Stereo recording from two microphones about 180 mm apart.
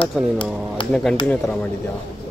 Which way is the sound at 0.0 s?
25° left (ahead or behind).